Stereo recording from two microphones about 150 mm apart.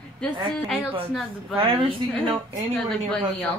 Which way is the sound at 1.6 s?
35° right (ahead or behind).